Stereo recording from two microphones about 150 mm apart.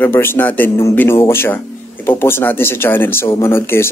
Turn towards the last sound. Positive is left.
turn(degrees=15)  # may be behind; listen again after turning